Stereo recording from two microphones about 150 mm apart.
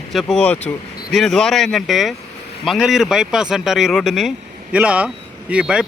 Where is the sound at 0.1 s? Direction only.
Centre (ahead or behind).